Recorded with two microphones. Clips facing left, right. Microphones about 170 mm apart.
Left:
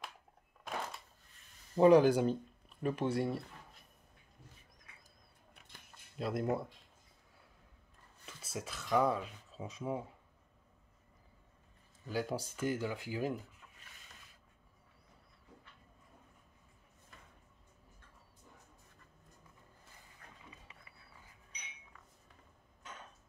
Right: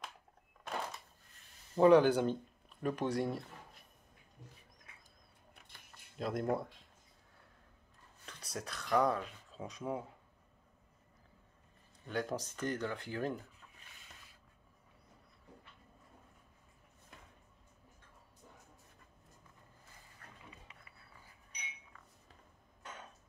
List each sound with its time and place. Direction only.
1.8 s speech: 10° left (ahead or behind)
6.1 s speech: 5° left (ahead or behind)
8.3 s speech: 5° left (ahead or behind)
12.1 s speech: 5° left (ahead or behind)